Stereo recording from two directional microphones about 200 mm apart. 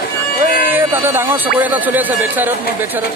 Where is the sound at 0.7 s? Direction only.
10° right (ahead or behind).